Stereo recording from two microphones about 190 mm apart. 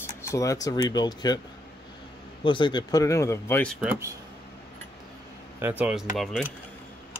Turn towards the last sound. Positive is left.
turn(degrees=0)  # may be behind; listen again after turning